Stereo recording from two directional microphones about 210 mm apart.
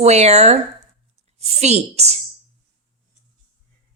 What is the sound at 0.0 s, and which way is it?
A woman's voice, 30° right (ahead or behind).